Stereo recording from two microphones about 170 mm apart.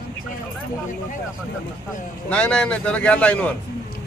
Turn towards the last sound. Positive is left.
turn(degrees=5)  # may be behind; listen again after turning